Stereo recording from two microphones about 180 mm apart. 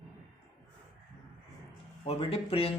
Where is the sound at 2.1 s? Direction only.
35° left (ahead or behind).